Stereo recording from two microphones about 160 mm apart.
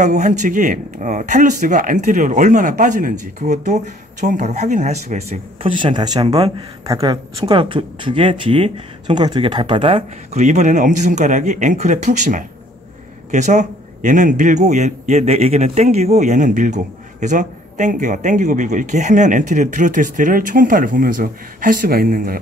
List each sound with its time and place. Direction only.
0.0 s a man's voice: 50° right (ahead or behind)
5.6 s speech: 35° right (ahead or behind)
10.4 s a man's voice: 50° right (ahead or behind); by 22.4 s 65° right (ahead or behind)